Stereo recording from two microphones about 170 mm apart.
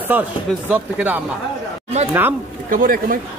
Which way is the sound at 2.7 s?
55° right (ahead or behind).